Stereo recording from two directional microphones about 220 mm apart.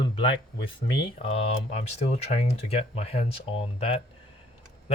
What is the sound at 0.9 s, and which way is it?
Speech, 20° left (ahead or behind).